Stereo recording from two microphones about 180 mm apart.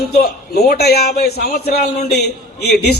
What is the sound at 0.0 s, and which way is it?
A man's voice, 60° left (ahead or behind).